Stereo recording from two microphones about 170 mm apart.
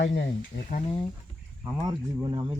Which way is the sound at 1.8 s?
25° right (ahead or behind).